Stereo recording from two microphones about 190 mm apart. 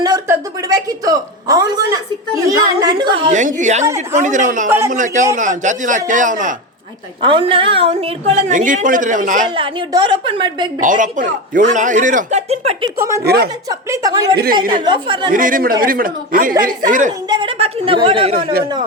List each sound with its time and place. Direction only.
0.0 s a sound: 20° right (ahead or behind)
2.3 s a woman's voice: 20° right (ahead or behind)
3.3 s a woman's voice: 40° right (ahead or behind)
7.2 s a woman's voice: 30° right (ahead or behind)
9.5 s a woman's voice: 25° right (ahead or behind)
10.8 s a woman's voice: 45° right (ahead or behind)
13.0 s a woman's voice: 15° right (ahead or behind)
13.2 s a woman's voice: 60° right (ahead or behind)
13.7 s a woman's voice: 15° right (ahead or behind)
15.3 s speech: 45° right (ahead or behind)
17.2 s a woman's voice: 25° right (ahead or behind)